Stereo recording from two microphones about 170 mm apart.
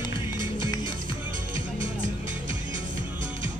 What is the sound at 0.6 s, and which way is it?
Music, 25° left (ahead or behind).